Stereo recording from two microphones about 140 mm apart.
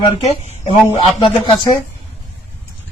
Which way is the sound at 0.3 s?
50° left (ahead or behind).